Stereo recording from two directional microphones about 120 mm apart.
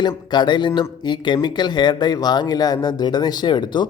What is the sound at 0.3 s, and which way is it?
Speech, 40° left (ahead or behind).